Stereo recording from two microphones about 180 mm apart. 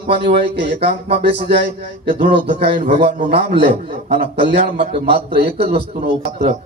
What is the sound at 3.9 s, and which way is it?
Speech, 55° right (ahead or behind).